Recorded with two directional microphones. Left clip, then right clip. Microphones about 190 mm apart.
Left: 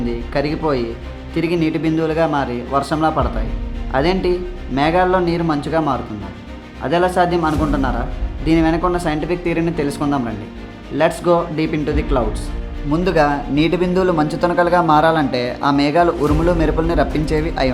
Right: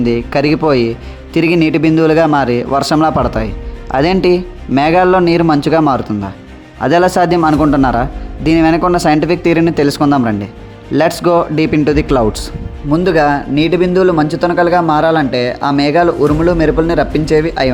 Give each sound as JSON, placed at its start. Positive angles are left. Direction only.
{"t": 0.0, "sound": "a man's voice", "side_deg": -45}
{"t": 12.9, "sound": "speech", "side_deg": -25}